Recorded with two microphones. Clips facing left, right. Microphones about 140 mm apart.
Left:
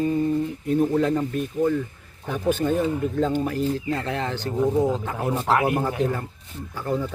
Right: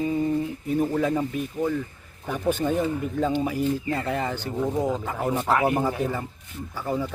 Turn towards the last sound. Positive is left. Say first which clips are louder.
# left 1 dB
turn(degrees=-5)  # may be behind; listen again after turning